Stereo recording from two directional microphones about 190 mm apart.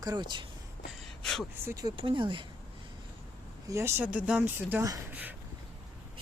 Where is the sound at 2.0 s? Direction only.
25° right (ahead or behind).